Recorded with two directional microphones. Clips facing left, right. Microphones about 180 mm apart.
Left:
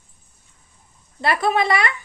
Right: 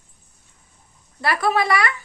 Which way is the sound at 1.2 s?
20° left (ahead or behind).